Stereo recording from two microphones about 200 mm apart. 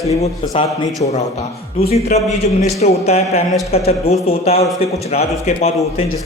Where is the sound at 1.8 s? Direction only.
35° left (ahead or behind).